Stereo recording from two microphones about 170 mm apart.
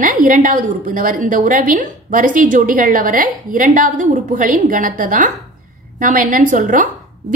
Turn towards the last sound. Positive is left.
turn(degrees=-50)  # may be behind; listen again after turning